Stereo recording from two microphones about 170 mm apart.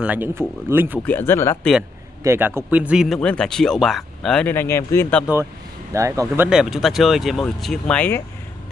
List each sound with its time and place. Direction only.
0.0 s speech: 10° right (ahead or behind)
1.0 s speech: 10° left (ahead or behind)
2.2 s speech: 15° right (ahead or behind); by 5.3 s 15° left (ahead or behind)
5.9 s speech: 20° right (ahead or behind)
6.5 s speech: centre (ahead or behind)